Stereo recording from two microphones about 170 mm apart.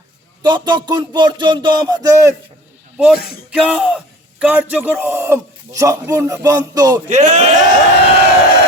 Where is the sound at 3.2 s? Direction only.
65° left (ahead or behind).